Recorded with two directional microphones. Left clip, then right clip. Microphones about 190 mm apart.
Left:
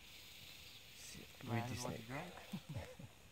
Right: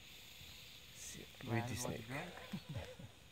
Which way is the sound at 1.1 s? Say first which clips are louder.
Right 2 dB; 30° right (ahead or behind).